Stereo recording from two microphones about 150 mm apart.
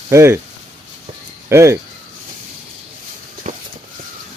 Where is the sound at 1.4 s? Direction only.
20° right (ahead or behind).